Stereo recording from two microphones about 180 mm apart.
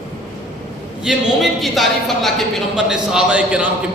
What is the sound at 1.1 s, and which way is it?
A man's voice, centre (ahead or behind).